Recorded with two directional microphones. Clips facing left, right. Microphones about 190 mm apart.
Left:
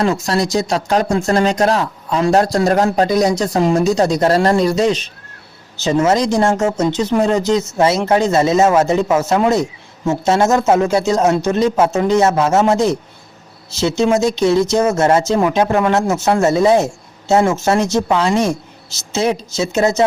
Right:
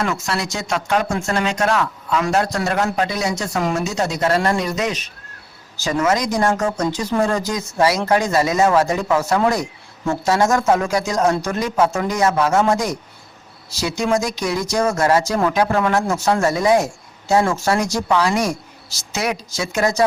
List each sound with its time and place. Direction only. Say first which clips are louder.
0.0 s speech: left 6 dB; 35° left (ahead or behind)